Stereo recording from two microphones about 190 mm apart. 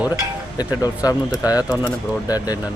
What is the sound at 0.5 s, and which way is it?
Speech, 20° left (ahead or behind).